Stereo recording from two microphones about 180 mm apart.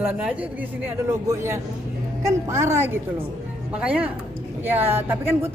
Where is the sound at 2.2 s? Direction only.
15° right (ahead or behind).